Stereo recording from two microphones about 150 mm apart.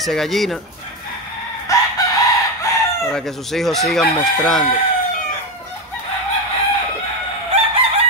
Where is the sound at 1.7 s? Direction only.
20° left (ahead or behind).